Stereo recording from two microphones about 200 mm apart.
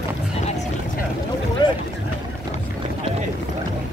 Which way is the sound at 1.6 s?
25° left (ahead or behind).